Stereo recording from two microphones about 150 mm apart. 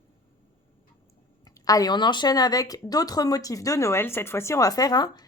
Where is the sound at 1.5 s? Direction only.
25° left (ahead or behind).